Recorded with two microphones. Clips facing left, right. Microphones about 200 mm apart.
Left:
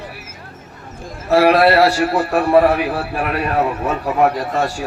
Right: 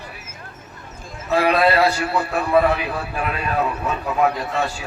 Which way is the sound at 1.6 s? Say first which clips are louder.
Left 5 dB; 90° left.